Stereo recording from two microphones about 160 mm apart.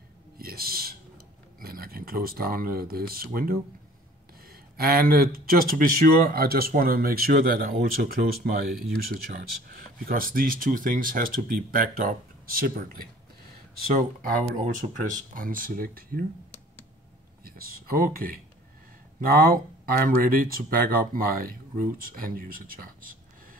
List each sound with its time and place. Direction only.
0.4 s a sound: 70° right (ahead or behind)
4.5 s speech: 65° right (ahead or behind)
13.9 s speech: 55° right (ahead or behind)
17.5 s speech: 65° right (ahead or behind)